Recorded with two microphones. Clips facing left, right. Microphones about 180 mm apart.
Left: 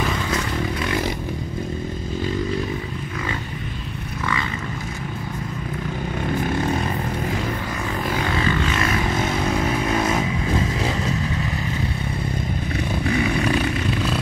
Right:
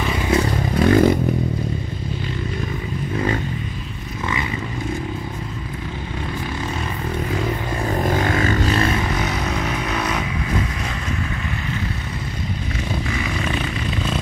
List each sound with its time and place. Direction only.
0.7 s a sound: 50° right (ahead or behind)
8.0 s vehicle: 45° right (ahead or behind)
9.8 s vehicle: 25° left (ahead or behind)